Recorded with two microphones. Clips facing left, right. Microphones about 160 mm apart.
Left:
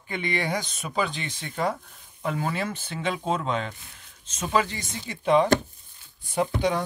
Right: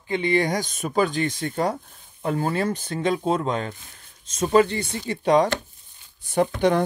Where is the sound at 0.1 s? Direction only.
30° right (ahead or behind).